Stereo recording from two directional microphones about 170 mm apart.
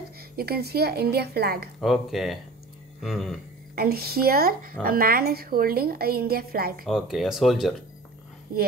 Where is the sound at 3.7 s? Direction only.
65° right (ahead or behind).